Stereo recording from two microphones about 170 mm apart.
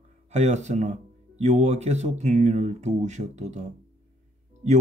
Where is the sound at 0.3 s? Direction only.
40° right (ahead or behind).